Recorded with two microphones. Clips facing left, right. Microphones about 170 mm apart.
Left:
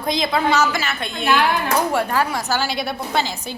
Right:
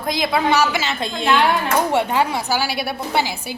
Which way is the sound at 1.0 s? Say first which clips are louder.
Right 3 dB; 90° right.